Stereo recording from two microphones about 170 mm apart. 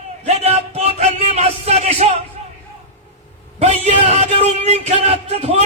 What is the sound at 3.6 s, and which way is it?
A man's voice, 40° right (ahead or behind).